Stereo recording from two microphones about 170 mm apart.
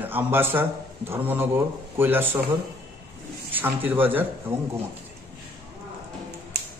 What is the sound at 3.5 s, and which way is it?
A man's voice, 10° right (ahead or behind).